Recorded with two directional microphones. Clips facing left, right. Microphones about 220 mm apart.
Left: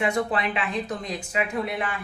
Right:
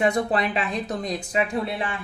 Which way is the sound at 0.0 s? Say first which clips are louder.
Right 3 dB; 40° right (ahead or behind).